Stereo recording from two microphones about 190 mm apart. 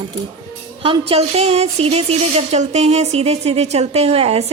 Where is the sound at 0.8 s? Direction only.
30° right (ahead or behind).